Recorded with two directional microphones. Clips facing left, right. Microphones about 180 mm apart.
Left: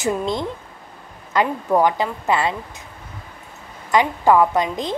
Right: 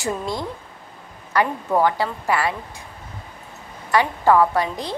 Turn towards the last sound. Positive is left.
turn(degrees=20)  # may be behind; listen again after turning